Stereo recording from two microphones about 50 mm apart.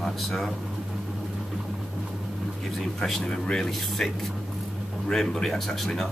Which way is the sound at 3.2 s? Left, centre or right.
Centre.